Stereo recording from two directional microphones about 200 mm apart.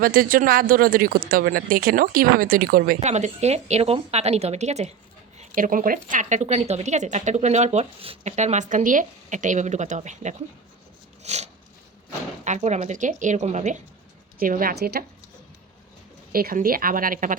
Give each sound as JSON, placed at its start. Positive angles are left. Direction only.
{"t": 0.0, "sound": "speech", "side_deg": -45}
{"t": 11.2, "sound": "a sound", "side_deg": -35}
{"t": 12.5, "sound": "speech", "side_deg": -35}
{"t": 16.3, "sound": "speech", "side_deg": -45}